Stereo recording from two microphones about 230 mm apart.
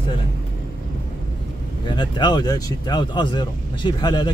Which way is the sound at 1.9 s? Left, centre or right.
Centre.